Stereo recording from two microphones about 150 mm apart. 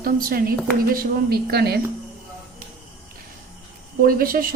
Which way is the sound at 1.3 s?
90° right.